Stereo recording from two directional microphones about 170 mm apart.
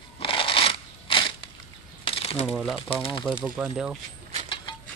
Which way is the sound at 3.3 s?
5° right (ahead or behind).